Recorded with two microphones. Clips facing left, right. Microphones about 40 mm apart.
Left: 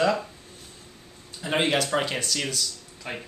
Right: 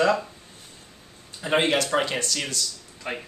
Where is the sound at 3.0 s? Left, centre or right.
Centre.